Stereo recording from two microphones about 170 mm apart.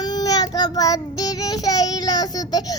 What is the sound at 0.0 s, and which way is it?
Child singing, 25° left (ahead or behind).